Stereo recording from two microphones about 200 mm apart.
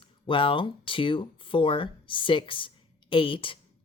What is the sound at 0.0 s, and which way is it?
Speech, 25° left (ahead or behind).